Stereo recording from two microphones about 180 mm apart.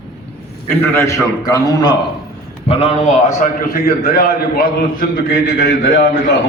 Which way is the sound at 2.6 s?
35° left (ahead or behind).